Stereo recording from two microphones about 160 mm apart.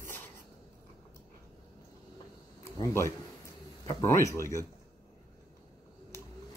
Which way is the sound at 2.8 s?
15° left (ahead or behind).